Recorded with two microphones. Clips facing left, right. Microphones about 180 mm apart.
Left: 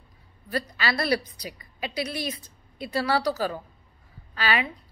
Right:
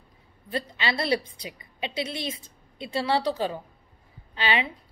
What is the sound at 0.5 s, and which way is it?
A woman's voice, 25° right (ahead or behind).